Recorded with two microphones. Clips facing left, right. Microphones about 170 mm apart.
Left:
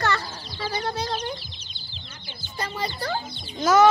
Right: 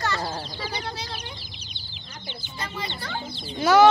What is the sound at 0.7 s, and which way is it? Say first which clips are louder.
Chicken: left 6 dB; 45° left (ahead or behind).